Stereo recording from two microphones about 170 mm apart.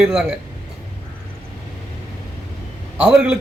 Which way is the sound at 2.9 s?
5° right (ahead or behind).